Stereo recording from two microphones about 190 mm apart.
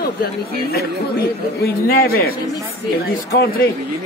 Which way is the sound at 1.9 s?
50° left (ahead or behind).